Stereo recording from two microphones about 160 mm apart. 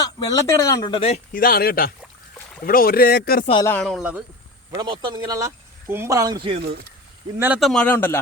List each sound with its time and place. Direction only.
0.0 s speech: 25° left (ahead or behind)
0.9 s speech: 40° left (ahead or behind)
1.3 s speech: 65° left (ahead or behind)
3.6 s a man's voice: 15° left (ahead or behind)
3.9 s speech: 5° right (ahead or behind)
4.7 s speech: 25° right (ahead or behind)
7.3 s speech: 10° right (ahead or behind)
7.6 s a man's voice: 5° left (ahead or behind)